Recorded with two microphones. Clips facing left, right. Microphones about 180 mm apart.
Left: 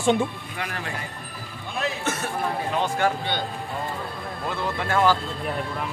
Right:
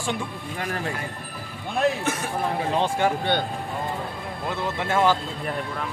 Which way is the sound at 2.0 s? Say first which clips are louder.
Right 1 dB; 10° right (ahead or behind).